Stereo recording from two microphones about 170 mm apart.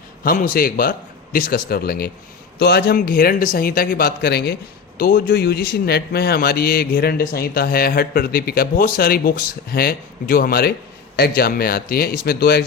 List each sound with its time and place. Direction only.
0.3 s a man's voice: 55° left (ahead or behind)